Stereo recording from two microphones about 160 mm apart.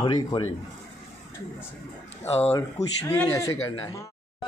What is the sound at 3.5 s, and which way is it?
Speech, 35° left (ahead or behind).